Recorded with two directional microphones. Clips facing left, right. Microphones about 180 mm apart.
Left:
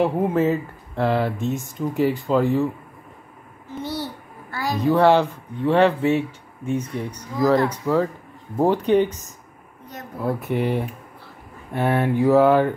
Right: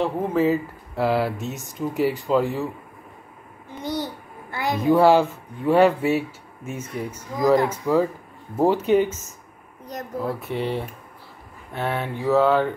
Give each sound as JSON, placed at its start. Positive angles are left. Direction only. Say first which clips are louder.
{"t": 0.0, "sound": "speech", "louder": "left 2 dB", "side_deg": 5}
{"t": 3.8, "sound": "babbling", "louder": "right 2 dB", "side_deg": -15}
{"t": 4.9, "sound": "speech", "louder": "right 1 dB", "side_deg": -10}
{"t": 10.2, "sound": "speech", "louder": "left 5 dB", "side_deg": 10}